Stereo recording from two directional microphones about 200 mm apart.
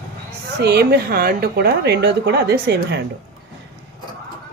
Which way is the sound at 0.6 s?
55° right (ahead or behind).